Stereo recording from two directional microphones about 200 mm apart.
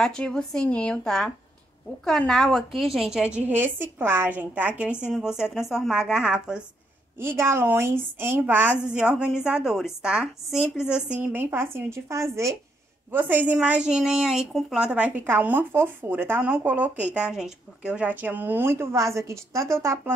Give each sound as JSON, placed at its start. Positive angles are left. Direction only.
{"t": 0.0, "sound": "a woman's voice", "side_deg": 5}